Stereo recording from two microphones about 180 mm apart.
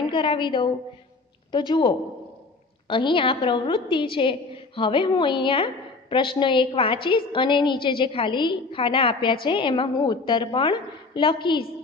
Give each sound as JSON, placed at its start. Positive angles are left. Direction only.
{"t": 0.1, "sound": "a woman's voice", "side_deg": 25}